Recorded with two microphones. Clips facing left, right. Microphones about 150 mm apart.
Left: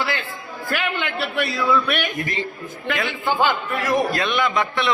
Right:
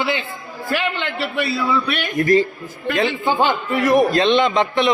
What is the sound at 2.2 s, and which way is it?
Speech, 40° right (ahead or behind).